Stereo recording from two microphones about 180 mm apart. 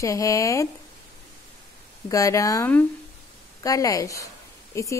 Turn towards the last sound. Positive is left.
turn(degrees=15)  # may be behind; listen again after turning